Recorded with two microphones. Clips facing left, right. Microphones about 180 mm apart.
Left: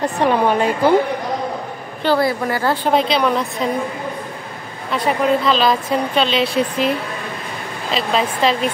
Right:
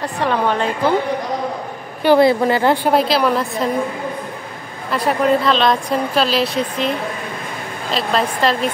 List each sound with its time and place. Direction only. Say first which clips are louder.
0.0 s a woman's voice: left 3 dB; 15° left (ahead or behind)
2.0 s a woman's voice: right 5 dB; 20° right (ahead or behind)
2.9 s a woman's voice: right 1 dB; 5° right (ahead or behind)
4.9 s a woman's voice: right 1 dB; centre (ahead or behind)
7.9 s a woman's voice: even; centre (ahead or behind)